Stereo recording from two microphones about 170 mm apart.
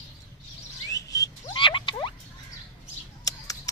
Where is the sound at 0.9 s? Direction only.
20° left (ahead or behind).